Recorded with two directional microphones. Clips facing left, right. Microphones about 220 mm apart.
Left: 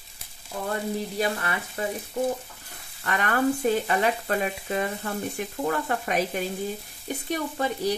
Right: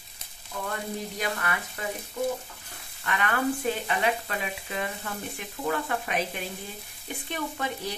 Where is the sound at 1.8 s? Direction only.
35° left (ahead or behind).